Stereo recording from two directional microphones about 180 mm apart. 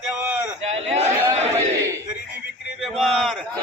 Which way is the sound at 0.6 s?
35° right (ahead or behind).